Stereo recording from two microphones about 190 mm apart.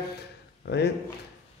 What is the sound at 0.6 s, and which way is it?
Speech, 60° left (ahead or behind).